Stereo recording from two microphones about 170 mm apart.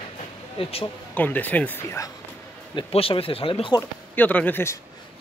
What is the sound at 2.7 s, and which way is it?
Speech, 35° left (ahead or behind).